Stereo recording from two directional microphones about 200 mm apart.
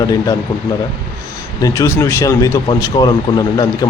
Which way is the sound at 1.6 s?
15° left (ahead or behind).